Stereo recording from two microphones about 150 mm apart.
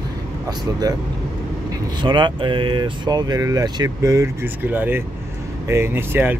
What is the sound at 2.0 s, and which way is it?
Speech, 30° right (ahead or behind).